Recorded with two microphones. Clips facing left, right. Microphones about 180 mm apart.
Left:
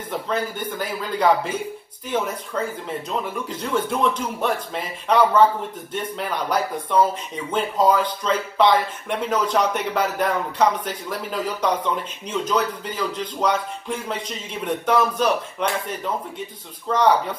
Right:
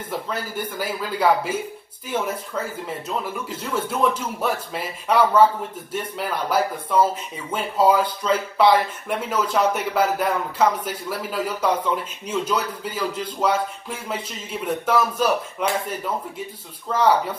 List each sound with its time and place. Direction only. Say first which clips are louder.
0.3 s speech: left 3 dB; 10° right (ahead or behind)